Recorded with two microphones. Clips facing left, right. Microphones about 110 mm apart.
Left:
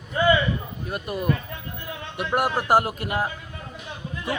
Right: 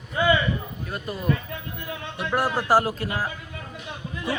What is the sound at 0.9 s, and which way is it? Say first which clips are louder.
A man's voice: left 1 dB; 15° left (ahead or behind).